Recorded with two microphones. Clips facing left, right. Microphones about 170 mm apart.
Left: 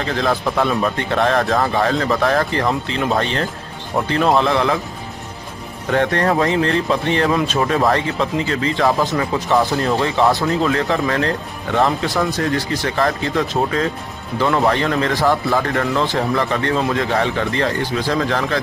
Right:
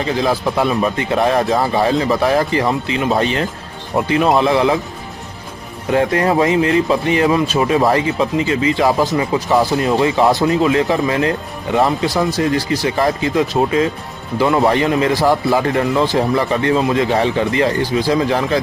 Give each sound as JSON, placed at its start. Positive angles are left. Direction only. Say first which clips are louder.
{"t": 0.2, "sound": "speech", "louder": "even", "side_deg": -5}
{"t": 5.9, "sound": "speech", "louder": "right 2 dB", "side_deg": -10}
{"t": 7.6, "sound": "speech", "louder": "right 3 dB", "side_deg": -15}
{"t": 9.5, "sound": "speech", "louder": "right 2 dB", "side_deg": 0}
{"t": 9.8, "sound": "speech", "louder": "right 3 dB", "side_deg": -15}